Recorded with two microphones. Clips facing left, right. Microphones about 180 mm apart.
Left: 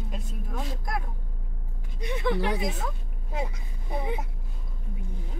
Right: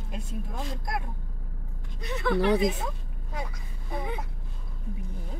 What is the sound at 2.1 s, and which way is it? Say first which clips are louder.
Speech: right 3 dB; 15° left (ahead or behind).